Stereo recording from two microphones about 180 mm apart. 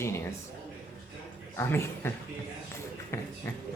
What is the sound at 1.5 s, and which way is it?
Speech, 15° left (ahead or behind).